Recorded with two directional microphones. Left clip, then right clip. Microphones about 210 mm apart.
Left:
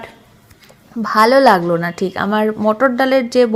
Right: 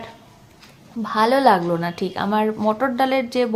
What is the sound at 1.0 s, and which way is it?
A woman's voice, 25° left (ahead or behind).